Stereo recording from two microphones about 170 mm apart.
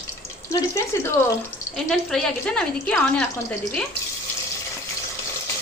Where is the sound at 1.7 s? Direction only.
Centre (ahead or behind).